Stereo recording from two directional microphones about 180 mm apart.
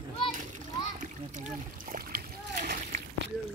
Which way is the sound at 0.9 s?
45° right (ahead or behind).